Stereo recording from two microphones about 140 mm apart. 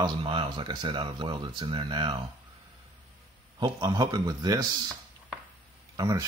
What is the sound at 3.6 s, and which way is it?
A man's voice, 30° right (ahead or behind).